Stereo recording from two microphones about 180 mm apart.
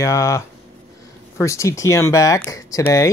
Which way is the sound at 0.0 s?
15° left (ahead or behind).